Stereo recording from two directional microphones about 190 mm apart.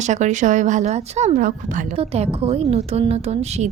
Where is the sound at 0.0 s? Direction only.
40° right (ahead or behind).